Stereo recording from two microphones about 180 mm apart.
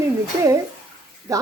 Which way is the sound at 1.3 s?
20° right (ahead or behind).